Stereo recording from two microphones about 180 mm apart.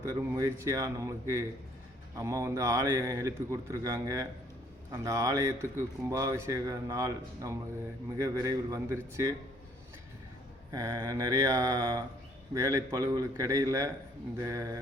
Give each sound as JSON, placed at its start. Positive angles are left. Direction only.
{"t": 0.2, "sound": "a man's voice", "side_deg": -15}
{"t": 10.7, "sound": "a man's voice", "side_deg": -15}